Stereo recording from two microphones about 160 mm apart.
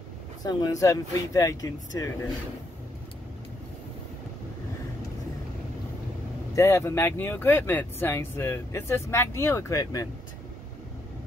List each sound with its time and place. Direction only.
0.4 s speech: 25° left (ahead or behind)
6.5 s speech: 15° left (ahead or behind)